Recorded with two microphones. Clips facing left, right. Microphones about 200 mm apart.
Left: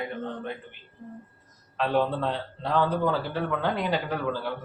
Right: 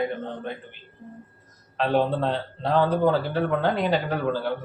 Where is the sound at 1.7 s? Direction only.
25° right (ahead or behind).